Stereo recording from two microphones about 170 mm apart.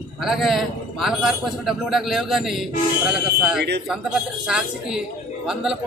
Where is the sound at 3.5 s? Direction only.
80° right.